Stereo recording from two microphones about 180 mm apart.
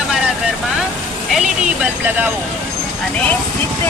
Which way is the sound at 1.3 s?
5° right (ahead or behind).